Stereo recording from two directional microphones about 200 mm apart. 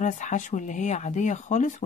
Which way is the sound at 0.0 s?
40° left (ahead or behind).